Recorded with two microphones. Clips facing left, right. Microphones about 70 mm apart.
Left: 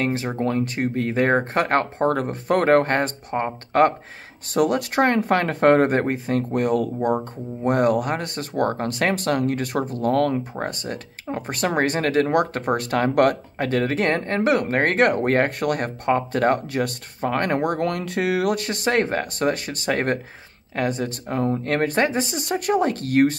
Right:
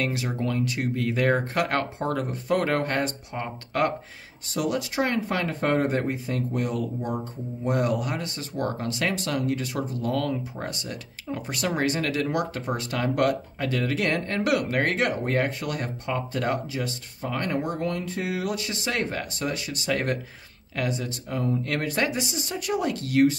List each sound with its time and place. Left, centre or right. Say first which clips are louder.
0.0 s speech: left 4 dB; left